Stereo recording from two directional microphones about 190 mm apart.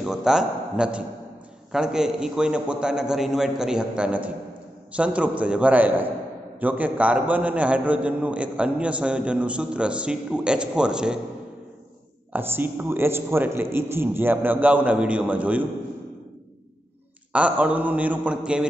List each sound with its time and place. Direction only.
0.0 s a man's voice: centre (ahead or behind)
12.3 s a man's voice: 10° right (ahead or behind)
17.3 s a man's voice: 5° right (ahead or behind)